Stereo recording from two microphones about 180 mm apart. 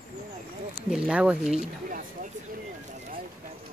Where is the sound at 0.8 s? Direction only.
5° right (ahead or behind).